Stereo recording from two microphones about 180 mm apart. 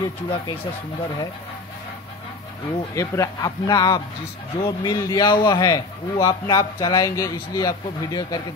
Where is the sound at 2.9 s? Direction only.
15° left (ahead or behind).